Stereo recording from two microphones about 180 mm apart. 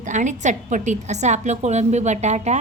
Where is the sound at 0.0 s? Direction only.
45° right (ahead or behind).